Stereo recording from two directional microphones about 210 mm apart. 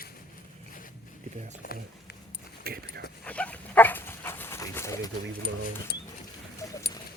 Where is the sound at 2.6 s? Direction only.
45° right (ahead or behind).